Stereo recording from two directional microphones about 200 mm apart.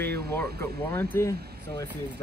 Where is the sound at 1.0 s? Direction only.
10° left (ahead or behind).